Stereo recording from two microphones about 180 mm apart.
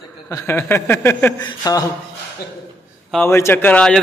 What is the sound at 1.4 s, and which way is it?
Speech, 20° left (ahead or behind).